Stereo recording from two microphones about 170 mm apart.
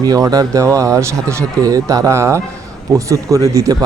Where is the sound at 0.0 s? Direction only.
20° right (ahead or behind).